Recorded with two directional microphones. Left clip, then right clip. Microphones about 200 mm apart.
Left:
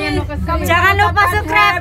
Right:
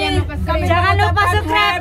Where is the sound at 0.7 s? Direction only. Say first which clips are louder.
Left 4 dB; 5° left (ahead or behind).